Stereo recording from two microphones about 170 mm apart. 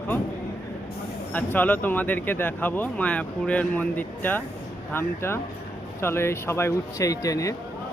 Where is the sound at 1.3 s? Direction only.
10° left (ahead or behind).